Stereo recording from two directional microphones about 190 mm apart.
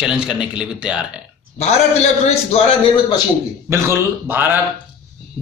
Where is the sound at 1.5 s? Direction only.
35° left (ahead or behind).